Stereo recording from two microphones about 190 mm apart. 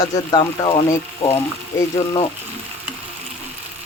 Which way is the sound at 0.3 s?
25° left (ahead or behind).